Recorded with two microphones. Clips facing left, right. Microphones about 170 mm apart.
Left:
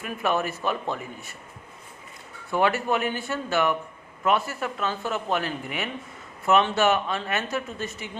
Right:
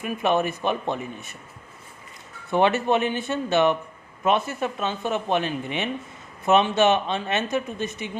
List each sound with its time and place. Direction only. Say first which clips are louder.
0.0 s speech: right 3 dB; 20° right (ahead or behind)
2.5 s speech: right 3 dB; 25° right (ahead or behind)